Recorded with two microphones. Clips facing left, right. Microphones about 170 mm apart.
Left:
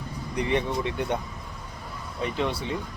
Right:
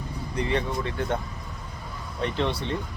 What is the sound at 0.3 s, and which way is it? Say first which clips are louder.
Speech: left 1 dB; 20° left (ahead or behind).